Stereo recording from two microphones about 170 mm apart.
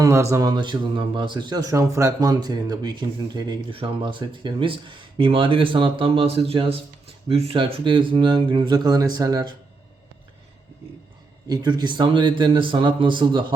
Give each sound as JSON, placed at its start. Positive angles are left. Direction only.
{"t": 0.0, "sound": "a man's voice", "side_deg": -15}
{"t": 11.4, "sound": "a man's voice", "side_deg": -25}